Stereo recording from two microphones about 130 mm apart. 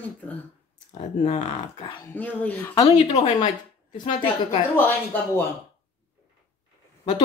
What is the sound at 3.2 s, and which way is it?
A woman's voice, 35° left (ahead or behind).